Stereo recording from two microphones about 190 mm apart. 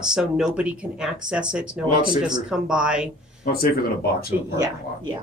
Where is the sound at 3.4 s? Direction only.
50° left (ahead or behind).